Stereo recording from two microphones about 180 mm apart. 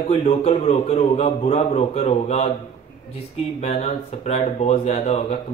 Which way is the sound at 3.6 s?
35° left (ahead or behind).